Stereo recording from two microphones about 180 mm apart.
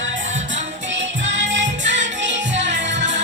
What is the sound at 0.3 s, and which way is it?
Music, 40° right (ahead or behind).